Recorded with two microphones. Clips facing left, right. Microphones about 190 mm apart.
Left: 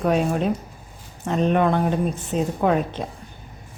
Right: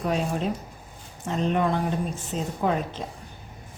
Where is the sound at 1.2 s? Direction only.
65° left (ahead or behind).